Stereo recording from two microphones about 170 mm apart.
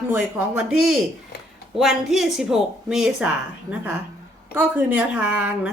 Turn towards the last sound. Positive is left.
turn(degrees=-10)  # may be behind; listen again after turning